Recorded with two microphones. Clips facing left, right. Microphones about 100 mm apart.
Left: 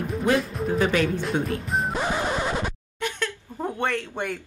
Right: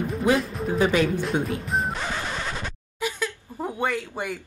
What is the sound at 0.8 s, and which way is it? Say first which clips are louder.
Speech: right 2 dB; 10° right (ahead or behind).